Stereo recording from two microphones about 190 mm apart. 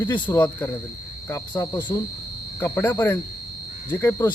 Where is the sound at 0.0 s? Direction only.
10° left (ahead or behind).